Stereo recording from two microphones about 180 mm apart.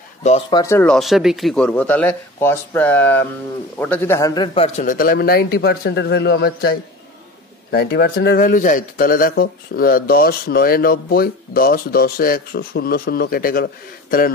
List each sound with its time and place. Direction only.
0.5 s a man's voice: 20° left (ahead or behind)
0.8 s a man's voice: centre (ahead or behind); by 4.6 s 25° left (ahead or behind)
4.7 s speech: 50° left (ahead or behind)